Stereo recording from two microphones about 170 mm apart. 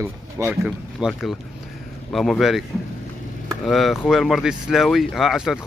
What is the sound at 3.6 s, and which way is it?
Speech, centre (ahead or behind).